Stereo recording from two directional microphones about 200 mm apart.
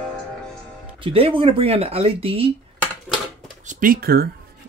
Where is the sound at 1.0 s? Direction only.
25° right (ahead or behind).